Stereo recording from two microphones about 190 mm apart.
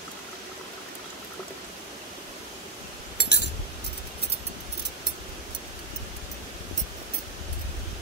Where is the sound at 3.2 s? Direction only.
60° left (ahead or behind).